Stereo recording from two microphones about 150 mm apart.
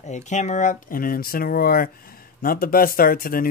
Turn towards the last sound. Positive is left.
turn(degrees=75)  # may be behind; listen again after turning